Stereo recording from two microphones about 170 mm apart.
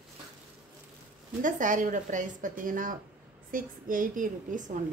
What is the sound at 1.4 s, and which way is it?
Speech, 50° right (ahead or behind).